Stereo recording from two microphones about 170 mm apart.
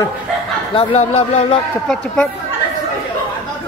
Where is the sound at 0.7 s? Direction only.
35° left (ahead or behind).